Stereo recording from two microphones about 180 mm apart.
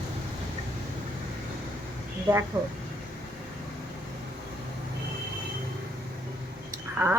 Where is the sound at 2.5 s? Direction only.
10° right (ahead or behind).